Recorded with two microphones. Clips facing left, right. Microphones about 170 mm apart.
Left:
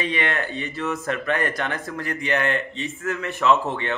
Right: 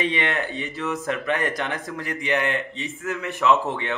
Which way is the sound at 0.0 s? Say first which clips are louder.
Right 1 dB; 20° right (ahead or behind).